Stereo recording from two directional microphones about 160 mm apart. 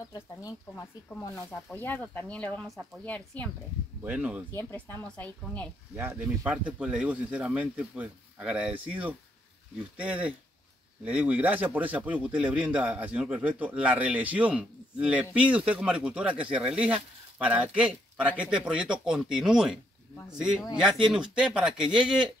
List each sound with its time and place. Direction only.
0.1 s speech: 25° left (ahead or behind); by 3.4 s 5° left (ahead or behind)
4.0 s speech: 10° right (ahead or behind)
4.5 s speech: 15° left (ahead or behind)
5.9 s speech: 10° right (ahead or behind)